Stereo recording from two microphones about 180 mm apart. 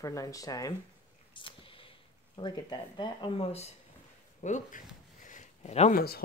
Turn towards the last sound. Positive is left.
turn(degrees=60)  # may be behind; listen again after turning